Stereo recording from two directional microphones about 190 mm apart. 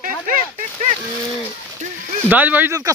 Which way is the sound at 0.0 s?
45° right (ahead or behind).